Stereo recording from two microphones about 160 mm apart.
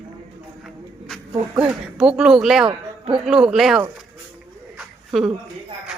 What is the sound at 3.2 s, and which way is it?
Speech, 5° right (ahead or behind).